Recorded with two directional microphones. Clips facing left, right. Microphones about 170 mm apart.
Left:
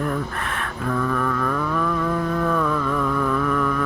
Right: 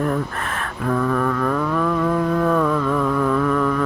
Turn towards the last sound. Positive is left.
turn(degrees=-35)  # may be behind; listen again after turning